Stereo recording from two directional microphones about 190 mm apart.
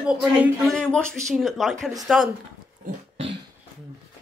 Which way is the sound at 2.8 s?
40° right (ahead or behind).